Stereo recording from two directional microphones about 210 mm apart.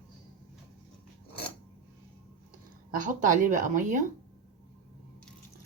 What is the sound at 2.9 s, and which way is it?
Speech, 40° right (ahead or behind).